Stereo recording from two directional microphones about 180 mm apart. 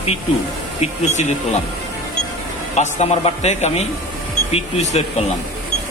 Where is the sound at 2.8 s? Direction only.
40° left (ahead or behind).